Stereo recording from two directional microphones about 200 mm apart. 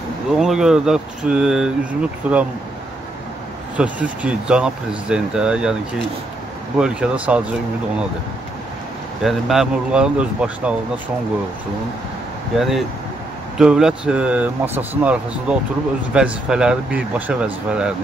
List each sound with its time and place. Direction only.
0.4 s speech: centre (ahead or behind)
3.7 s speech: 5° right (ahead or behind)
6.8 s speech: 5° right (ahead or behind)
9.2 s speech: centre (ahead or behind)
12.5 s speech: centre (ahead or behind)